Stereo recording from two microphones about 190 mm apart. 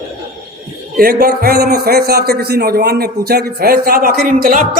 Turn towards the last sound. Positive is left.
turn(degrees=-45)  # may be behind; listen again after turning